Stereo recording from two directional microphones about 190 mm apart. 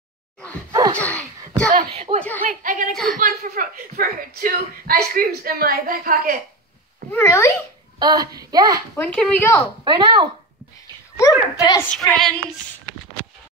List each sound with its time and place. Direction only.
0.7 s gasp: 20° right (ahead or behind)
0.9 s speech: 5° left (ahead or behind)
2.0 s speech: 30° right (ahead or behind)
2.4 s speech: 45° right (ahead or behind)
2.9 s a sound: centre (ahead or behind)
3.2 s speech: 45° right (ahead or behind)
7.1 s speech: 10° left (ahead or behind)
8.0 s speech: 20° right (ahead or behind)
8.9 s speech: 5° left (ahead or behind)
9.8 s speech: 25° right (ahead or behind)
11.1 s a child's voice: 20° left (ahead or behind)
11.8 s a sound: 5° left (ahead or behind)